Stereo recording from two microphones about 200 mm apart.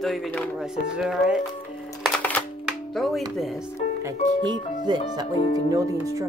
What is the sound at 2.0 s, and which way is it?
Music, 5° left (ahead or behind).